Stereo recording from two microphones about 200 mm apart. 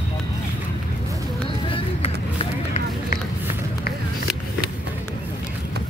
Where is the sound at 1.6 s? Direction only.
25° left (ahead or behind).